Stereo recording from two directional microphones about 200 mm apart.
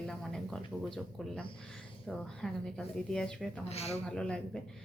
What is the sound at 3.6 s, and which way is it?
Speech, 30° left (ahead or behind).